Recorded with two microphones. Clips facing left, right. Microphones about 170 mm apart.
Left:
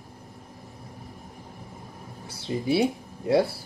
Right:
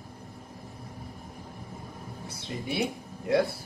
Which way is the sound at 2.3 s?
30° left (ahead or behind).